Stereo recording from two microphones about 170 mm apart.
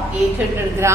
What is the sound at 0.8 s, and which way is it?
Speech, 15° right (ahead or behind).